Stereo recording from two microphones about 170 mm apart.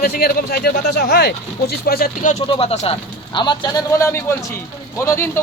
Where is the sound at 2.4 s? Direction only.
35° left (ahead or behind).